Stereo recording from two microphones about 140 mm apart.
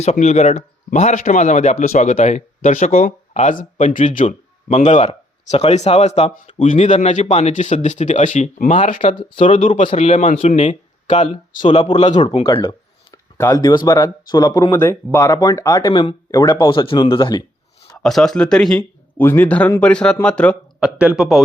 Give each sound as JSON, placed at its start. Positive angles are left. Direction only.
{"t": 0.0, "sound": "speech", "side_deg": 55}
{"t": 6.7, "sound": "speech", "side_deg": 60}
{"t": 9.0, "sound": "a man's voice", "side_deg": 40}
{"t": 10.1, "sound": "speech", "side_deg": 60}
{"t": 12.1, "sound": "speech", "side_deg": 30}
{"t": 12.4, "sound": "a sound", "side_deg": 40}
{"t": 13.3, "sound": "speech", "side_deg": 25}
{"t": 17.9, "sound": "speech", "side_deg": 5}
{"t": 20.7, "sound": "speech", "side_deg": -10}